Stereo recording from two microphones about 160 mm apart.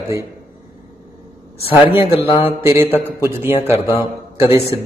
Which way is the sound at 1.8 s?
10° right (ahead or behind).